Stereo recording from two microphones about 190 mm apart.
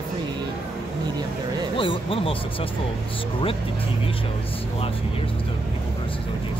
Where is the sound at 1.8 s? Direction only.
30° left (ahead or behind).